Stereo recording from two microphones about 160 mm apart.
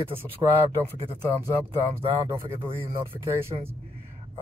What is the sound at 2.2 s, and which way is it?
Speech, 15° right (ahead or behind).